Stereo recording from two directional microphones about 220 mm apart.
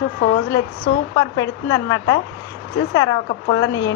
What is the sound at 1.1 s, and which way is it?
A woman's voice, 15° left (ahead or behind).